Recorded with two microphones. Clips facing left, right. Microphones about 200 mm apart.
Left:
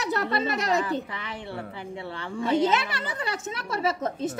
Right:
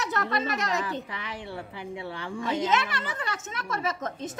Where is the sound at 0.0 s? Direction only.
30° left (ahead or behind).